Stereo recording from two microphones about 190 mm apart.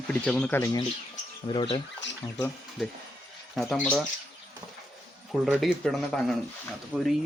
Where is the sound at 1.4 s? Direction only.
25° left (ahead or behind).